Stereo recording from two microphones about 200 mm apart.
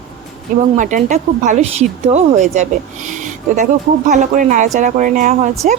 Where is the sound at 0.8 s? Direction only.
40° right (ahead or behind).